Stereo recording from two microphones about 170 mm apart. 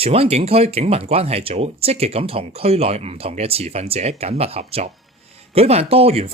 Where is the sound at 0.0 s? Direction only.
35° right (ahead or behind).